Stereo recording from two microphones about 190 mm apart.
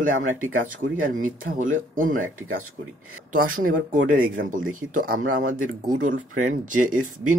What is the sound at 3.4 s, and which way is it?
Speech, 90° right.